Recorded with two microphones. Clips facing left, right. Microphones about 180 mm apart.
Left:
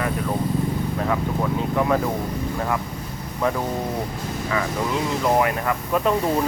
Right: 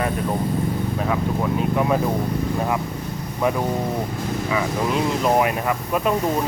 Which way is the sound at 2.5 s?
20° right (ahead or behind).